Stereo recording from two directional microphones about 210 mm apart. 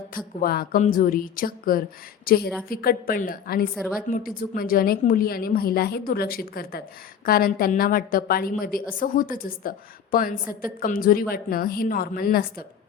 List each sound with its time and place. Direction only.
0.3 s a woman's voice: 45° left (ahead or behind)